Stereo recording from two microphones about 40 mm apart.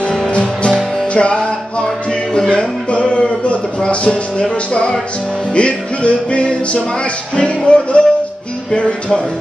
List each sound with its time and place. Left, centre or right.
0.3 s music: left
0.7 s music: centre
1.1 s music: left